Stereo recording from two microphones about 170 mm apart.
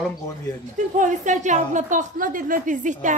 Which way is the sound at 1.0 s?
45° right (ahead or behind).